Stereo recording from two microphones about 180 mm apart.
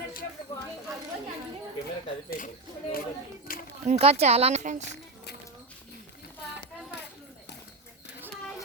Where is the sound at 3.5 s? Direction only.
55° left (ahead or behind).